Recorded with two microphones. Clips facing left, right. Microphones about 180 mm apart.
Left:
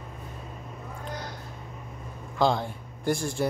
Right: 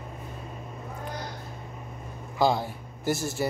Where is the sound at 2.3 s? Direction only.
5° right (ahead or behind).